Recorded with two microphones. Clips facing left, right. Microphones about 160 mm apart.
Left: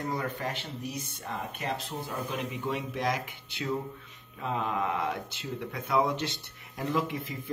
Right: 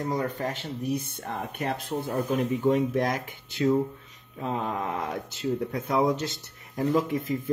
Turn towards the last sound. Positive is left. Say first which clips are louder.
# right 6 dB
turn(degrees=-45)  # may be behind; listen again after turning